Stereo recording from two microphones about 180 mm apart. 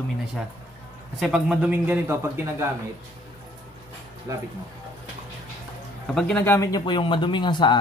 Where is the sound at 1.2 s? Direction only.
5° right (ahead or behind).